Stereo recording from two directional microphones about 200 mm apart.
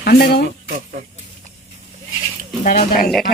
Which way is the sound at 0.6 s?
45° right (ahead or behind).